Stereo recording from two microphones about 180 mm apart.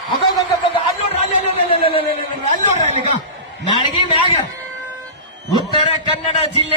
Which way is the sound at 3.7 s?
30° left (ahead or behind).